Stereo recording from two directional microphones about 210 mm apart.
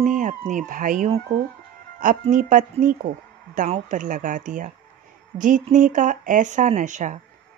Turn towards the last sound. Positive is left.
turn(degrees=-35)  # may be behind; listen again after turning